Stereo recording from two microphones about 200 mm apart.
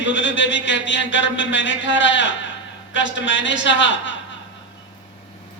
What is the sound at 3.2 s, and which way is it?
Speech, 70° left (ahead or behind).